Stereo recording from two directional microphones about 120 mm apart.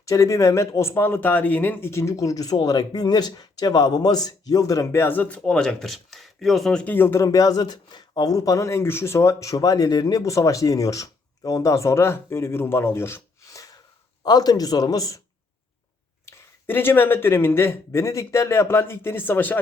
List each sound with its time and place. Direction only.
0.0 s speech: 25° left (ahead or behind)
16.2 s speech: 15° left (ahead or behind)